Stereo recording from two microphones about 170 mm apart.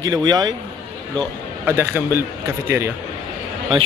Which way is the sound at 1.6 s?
15° right (ahead or behind).